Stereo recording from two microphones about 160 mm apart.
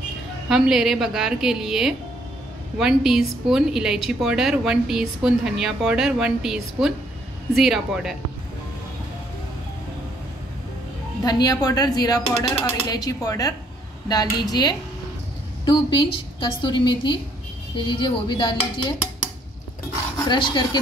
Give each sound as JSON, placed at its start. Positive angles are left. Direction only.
{"t": 0.5, "sound": "a woman's voice", "side_deg": 0}
{"t": 11.2, "sound": "speech", "side_deg": 25}
{"t": 20.2, "sound": "speech", "side_deg": 30}